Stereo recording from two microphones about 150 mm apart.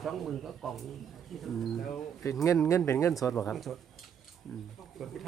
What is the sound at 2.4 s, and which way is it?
Speech, 20° left (ahead or behind).